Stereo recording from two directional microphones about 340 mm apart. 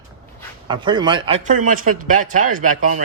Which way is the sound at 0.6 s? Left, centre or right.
Centre.